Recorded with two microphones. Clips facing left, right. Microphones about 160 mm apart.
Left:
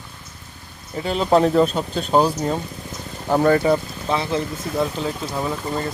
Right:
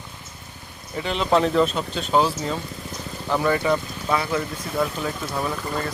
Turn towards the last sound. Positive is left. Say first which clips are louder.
# left 2 dB
turn(degrees=20)  # may be behind; listen again after turning